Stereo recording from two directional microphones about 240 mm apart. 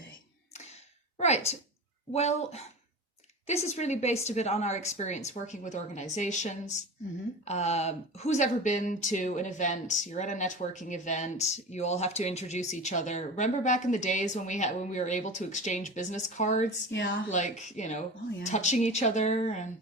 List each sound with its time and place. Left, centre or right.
1.2 s a woman's voice: left
16.9 s speech: left
17.3 s speech: left